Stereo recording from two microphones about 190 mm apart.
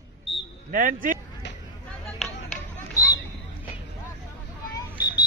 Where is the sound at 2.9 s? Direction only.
20° left (ahead or behind).